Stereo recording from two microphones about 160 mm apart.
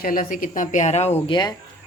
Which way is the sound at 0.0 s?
60° left (ahead or behind).